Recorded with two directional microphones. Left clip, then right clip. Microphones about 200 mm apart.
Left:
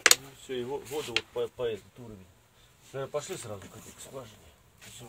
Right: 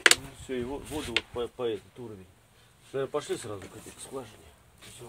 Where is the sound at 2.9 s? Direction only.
25° right (ahead or behind).